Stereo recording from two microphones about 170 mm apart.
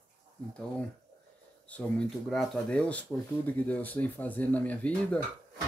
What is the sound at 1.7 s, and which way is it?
Speech, 5° left (ahead or behind).